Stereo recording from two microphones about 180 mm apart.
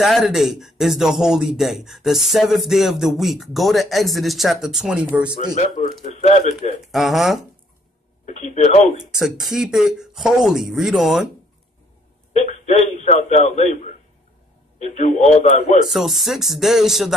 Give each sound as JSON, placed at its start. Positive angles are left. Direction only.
{"t": 0.0, "sound": "speech", "side_deg": 0}
{"t": 5.8, "sound": "speech", "side_deg": 40}
{"t": 6.8, "sound": "speech", "side_deg": 0}
{"t": 8.3, "sound": "speech", "side_deg": 40}
{"t": 9.1, "sound": "speech", "side_deg": 0}
{"t": 12.4, "sound": "a man's voice", "side_deg": 40}
{"t": 15.9, "sound": "speech", "side_deg": 0}